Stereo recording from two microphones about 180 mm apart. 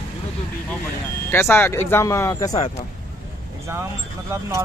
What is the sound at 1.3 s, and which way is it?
Speech, 10° left (ahead or behind).